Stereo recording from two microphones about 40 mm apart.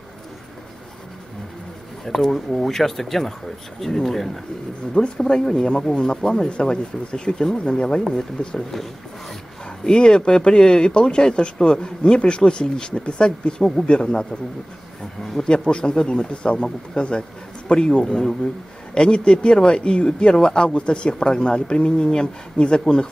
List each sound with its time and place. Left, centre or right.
2.0 s speech: centre
4.9 s speech: left
8.0 s speech: centre
8.4 s speech: left
9.8 s speech: left
13.6 s speech: centre
13.8 s speech: left
15.4 s speech: left